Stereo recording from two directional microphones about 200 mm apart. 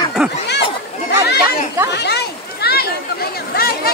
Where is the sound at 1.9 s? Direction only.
55° left (ahead or behind).